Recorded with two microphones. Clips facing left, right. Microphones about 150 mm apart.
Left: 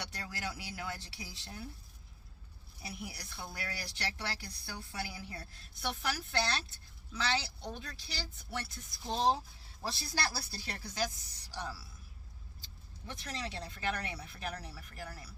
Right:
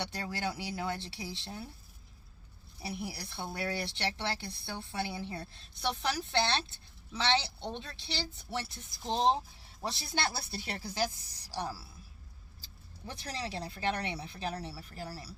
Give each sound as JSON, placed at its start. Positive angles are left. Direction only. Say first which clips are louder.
{"t": 0.0, "sound": "speech", "louder": "right 6 dB", "side_deg": -30}
{"t": 2.8, "sound": "speech", "louder": "right 6 dB", "side_deg": -30}